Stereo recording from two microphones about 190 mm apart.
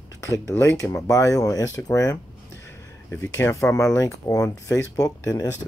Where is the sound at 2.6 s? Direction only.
10° left (ahead or behind).